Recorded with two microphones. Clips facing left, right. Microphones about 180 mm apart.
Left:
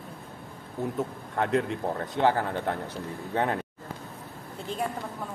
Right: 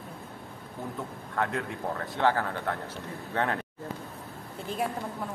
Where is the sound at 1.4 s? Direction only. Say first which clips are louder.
Left 5 dB; 20° left (ahead or behind).